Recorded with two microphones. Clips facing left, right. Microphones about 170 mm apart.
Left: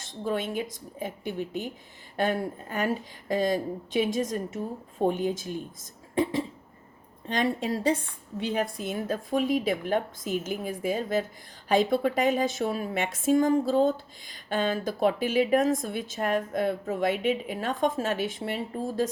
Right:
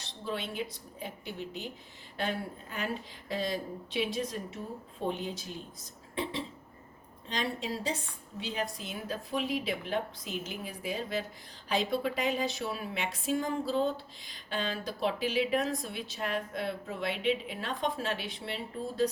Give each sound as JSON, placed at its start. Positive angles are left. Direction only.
{"t": 0.0, "sound": "a woman's voice", "side_deg": 45}